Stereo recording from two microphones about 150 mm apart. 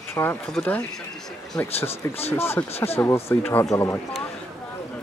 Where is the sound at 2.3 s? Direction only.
15° left (ahead or behind).